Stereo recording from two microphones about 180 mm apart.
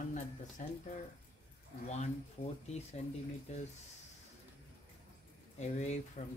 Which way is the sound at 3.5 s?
40° left (ahead or behind).